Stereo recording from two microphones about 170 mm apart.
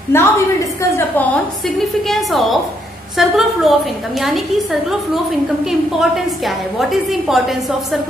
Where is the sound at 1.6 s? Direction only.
Centre (ahead or behind).